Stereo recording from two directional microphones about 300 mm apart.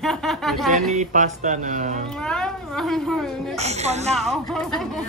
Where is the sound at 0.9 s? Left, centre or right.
Right.